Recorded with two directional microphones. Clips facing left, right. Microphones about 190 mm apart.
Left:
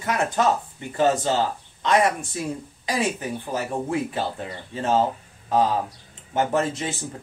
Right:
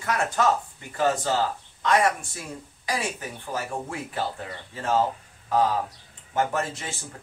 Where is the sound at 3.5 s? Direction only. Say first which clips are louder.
Left 5 dB; 20° left (ahead or behind).